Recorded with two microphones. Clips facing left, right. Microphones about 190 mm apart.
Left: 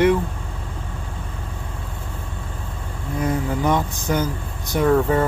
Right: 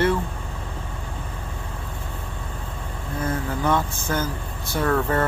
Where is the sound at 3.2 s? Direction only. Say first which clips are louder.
Left 3 dB; 15° left (ahead or behind).